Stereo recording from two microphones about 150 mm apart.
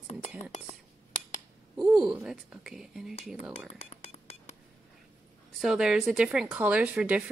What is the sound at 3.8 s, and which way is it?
Music, 40° left (ahead or behind).